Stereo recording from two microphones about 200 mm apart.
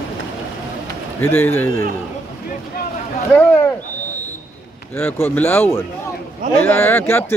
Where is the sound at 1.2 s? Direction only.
10° left (ahead or behind).